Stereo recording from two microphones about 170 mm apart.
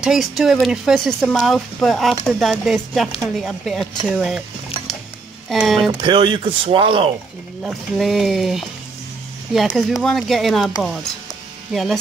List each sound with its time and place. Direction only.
0.0 s speech: centre (ahead or behind)
5.5 s speech: centre (ahead or behind)
5.8 s speech: 30° right (ahead or behind)
7.6 s speech: centre (ahead or behind)
11.7 s speech: centre (ahead or behind)